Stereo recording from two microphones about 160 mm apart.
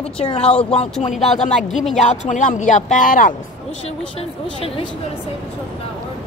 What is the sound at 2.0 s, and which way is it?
Speech, 50° left (ahead or behind).